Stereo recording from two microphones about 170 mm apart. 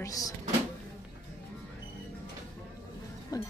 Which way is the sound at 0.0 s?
20° left (ahead or behind).